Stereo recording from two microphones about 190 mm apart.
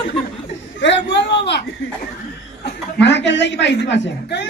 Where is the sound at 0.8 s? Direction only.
70° left (ahead or behind).